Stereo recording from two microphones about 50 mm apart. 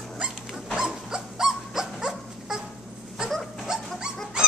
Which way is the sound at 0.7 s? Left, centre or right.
Centre.